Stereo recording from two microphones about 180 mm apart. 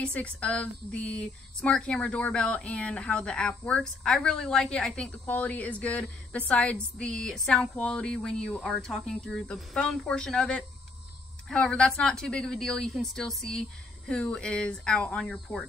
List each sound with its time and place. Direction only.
0.0 s speech: 5° left (ahead or behind)